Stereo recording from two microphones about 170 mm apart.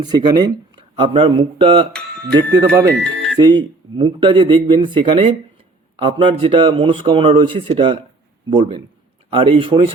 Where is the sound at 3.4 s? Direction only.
25° right (ahead or behind).